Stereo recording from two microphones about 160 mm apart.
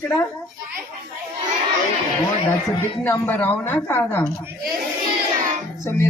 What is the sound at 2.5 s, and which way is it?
A woman's voice, 15° left (ahead or behind).